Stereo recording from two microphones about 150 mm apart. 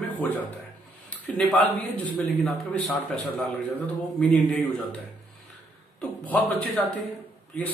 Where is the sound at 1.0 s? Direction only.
5° left (ahead or behind).